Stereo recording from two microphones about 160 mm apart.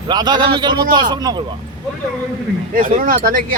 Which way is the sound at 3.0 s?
60° right (ahead or behind).